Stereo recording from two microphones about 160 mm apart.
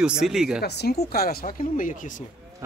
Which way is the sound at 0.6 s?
85° left.